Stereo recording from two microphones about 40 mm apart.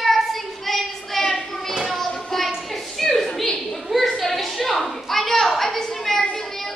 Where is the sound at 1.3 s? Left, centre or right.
Centre.